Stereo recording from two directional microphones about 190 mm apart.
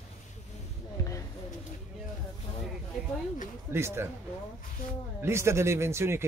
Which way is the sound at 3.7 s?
15° right (ahead or behind).